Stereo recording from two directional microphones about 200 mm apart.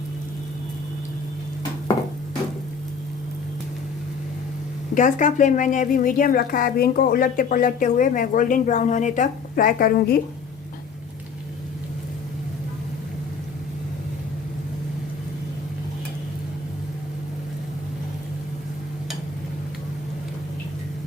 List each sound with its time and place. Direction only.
4.9 s a woman's voice: 40° left (ahead or behind)